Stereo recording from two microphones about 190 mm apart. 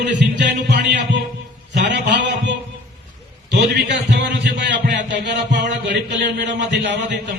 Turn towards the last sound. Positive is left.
turn(degrees=-65)  # may be behind; listen again after turning